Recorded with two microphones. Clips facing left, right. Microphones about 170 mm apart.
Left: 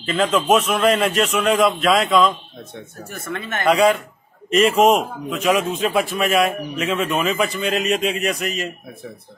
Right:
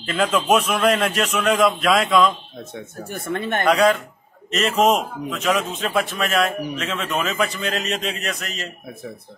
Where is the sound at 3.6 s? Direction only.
5° left (ahead or behind).